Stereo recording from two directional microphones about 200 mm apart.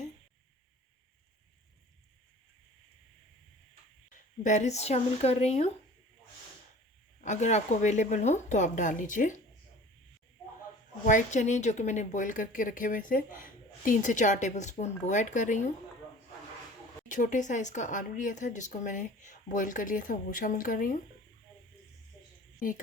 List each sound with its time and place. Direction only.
4.4 s a woman's voice: 35° left (ahead or behind)
7.2 s a woman's voice: 35° left (ahead or behind)
11.0 s a woman's voice: 40° left (ahead or behind)
17.1 s a woman's voice: 40° left (ahead or behind)